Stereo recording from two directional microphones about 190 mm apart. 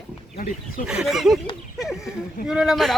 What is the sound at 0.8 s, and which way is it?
Speech, 5° right (ahead or behind).